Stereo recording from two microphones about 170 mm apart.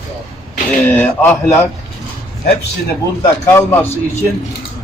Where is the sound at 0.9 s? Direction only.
10° left (ahead or behind).